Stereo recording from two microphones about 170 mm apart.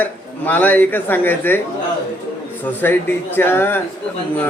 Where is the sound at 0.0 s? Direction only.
10° left (ahead or behind).